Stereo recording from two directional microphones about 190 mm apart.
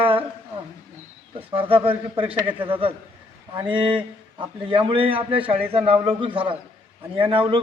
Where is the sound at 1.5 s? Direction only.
30° right (ahead or behind).